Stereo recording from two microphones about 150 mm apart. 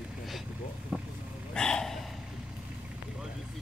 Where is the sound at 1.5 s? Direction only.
5° left (ahead or behind).